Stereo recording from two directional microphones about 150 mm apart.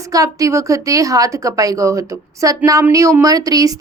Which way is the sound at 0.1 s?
20° right (ahead or behind).